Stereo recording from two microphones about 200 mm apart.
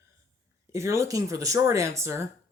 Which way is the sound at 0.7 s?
15° right (ahead or behind).